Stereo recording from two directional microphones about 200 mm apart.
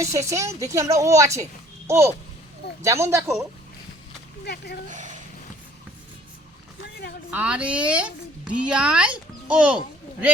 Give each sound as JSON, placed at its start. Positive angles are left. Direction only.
{"t": 0.0, "sound": "a woman's voice", "side_deg": -15}
{"t": 4.4, "sound": "speech", "side_deg": 55}
{"t": 4.9, "sound": "speech", "side_deg": -40}
{"t": 6.8, "sound": "vehicle", "side_deg": 55}
{"t": 7.3, "sound": "speech", "side_deg": -5}